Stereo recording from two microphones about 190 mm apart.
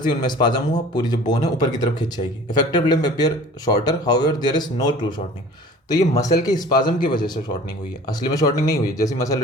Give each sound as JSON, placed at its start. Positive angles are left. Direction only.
{"t": 0.1, "sound": "speech", "side_deg": 25}